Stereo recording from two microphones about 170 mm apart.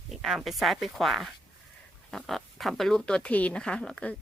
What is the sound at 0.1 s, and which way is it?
Speech, centre (ahead or behind).